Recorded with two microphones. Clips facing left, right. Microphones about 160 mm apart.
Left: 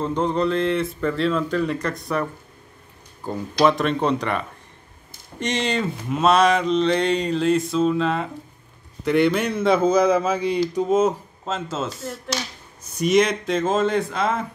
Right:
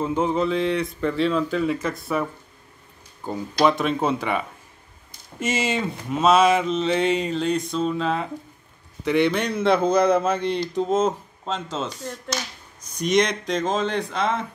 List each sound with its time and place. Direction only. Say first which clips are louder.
0.0 s mantra: even; 5° right (ahead or behind)
3.3 s mantra: left 1 dB; centre (ahead or behind)
9.0 s a man's voice: left 2 dB; centre (ahead or behind)
12.9 s mantra: left 3 dB; 5° left (ahead or behind)